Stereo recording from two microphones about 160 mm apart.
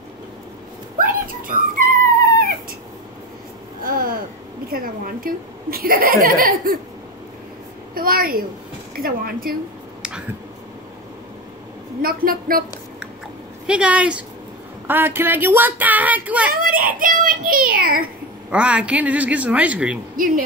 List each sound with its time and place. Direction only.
0.9 s dog: 60° right (ahead or behind)
3.8 s a sound: 65° right (ahead or behind)
4.6 s speech: 65° right (ahead or behind)
7.9 s a woman's voice: 65° right (ahead or behind)
12.0 s a woman's voice: 65° right (ahead or behind)
13.7 s speech: 5° right (ahead or behind)
16.5 s speech: 60° right (ahead or behind)
18.5 s speech: 5° right (ahead or behind)